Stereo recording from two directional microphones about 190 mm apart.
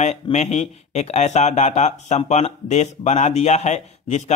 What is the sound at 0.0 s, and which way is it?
Speech, 35° left (ahead or behind).